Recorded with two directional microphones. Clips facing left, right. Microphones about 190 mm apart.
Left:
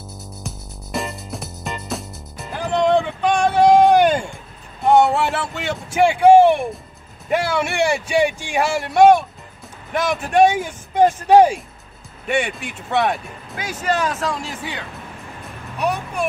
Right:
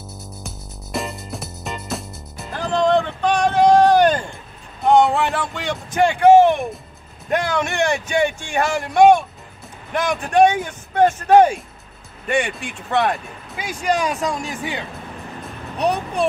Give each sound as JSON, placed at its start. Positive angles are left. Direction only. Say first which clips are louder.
{"t": 0.9, "sound": "music", "louder": "even", "side_deg": 0}
{"t": 2.5, "sound": "a sound", "louder": "even", "side_deg": 15}
{"t": 4.8, "sound": "speech", "louder": "even", "side_deg": 5}
{"t": 13.7, "sound": "speech", "louder": "right 1 dB", "side_deg": -15}
{"t": 15.8, "sound": "speech", "louder": "right 2 dB", "side_deg": -35}